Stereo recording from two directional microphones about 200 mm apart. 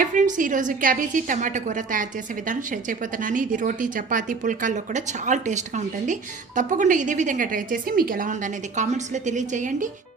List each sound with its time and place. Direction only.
0.0 s speech: 40° right (ahead or behind)